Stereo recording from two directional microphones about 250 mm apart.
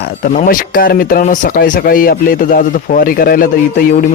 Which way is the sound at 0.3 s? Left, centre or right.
Left.